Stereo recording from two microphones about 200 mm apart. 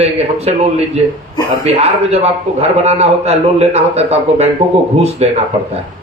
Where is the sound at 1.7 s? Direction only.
30° right (ahead or behind).